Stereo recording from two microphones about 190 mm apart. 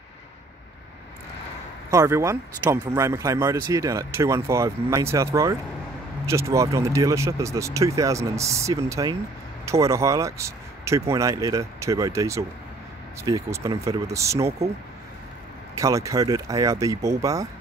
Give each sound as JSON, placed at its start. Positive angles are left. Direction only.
{"t": 1.9, "sound": "speech", "side_deg": -15}
{"t": 15.7, "sound": "speech", "side_deg": -15}